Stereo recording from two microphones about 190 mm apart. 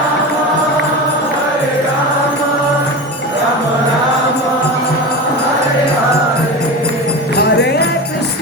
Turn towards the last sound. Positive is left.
turn(degrees=65)  # may be behind; listen again after turning